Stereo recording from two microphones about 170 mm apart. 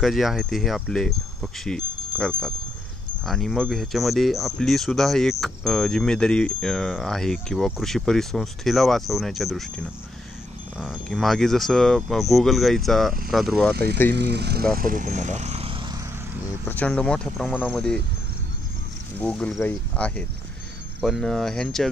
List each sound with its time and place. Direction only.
0.0 s speech: centre (ahead or behind)
10.8 s speech: centre (ahead or behind)
14.1 s speech: 85° right
14.7 s speech: 55° right (ahead or behind); by 16.0 s 30° right (ahead or behind)
16.6 s speech: 10° left (ahead or behind)
19.1 s speech: 5° left (ahead or behind)